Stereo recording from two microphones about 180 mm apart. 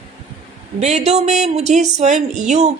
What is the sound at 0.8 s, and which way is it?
A woman's voice, 40° right (ahead or behind).